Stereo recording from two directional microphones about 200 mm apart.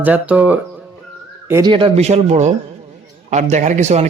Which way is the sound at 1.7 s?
30° right (ahead or behind).